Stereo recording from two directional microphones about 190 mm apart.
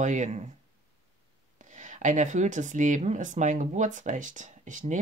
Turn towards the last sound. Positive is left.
turn(degrees=-40)  # may be behind; listen again after turning